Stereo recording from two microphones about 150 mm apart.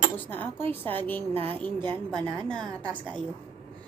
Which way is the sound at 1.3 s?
40° right (ahead or behind).